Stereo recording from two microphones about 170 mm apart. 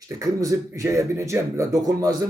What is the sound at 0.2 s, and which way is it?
Speech, 20° right (ahead or behind).